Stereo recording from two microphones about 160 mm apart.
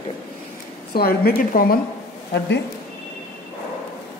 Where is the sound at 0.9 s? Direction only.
75° left (ahead or behind).